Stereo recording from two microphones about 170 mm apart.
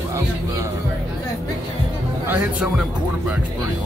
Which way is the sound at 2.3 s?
5° right (ahead or behind).